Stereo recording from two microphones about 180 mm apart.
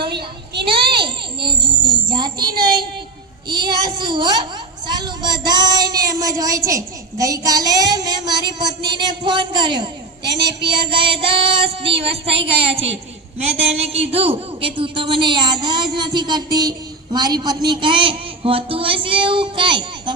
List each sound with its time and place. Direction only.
0.7 s a sound: 30° right (ahead or behind)
2.0 s child singing: 25° right (ahead or behind)
3.5 s a sound: 25° right (ahead or behind)
4.9 s child singing: 25° right (ahead or behind)
10.4 s a woman's voice: 25° right (ahead or behind)
13.7 s a woman's voice: 35° right (ahead or behind)